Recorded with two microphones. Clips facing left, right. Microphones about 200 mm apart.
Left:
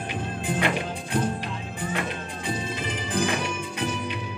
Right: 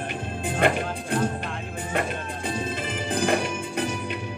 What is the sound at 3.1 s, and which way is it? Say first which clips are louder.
Music: right 3 dB; 50° right (ahead or behind).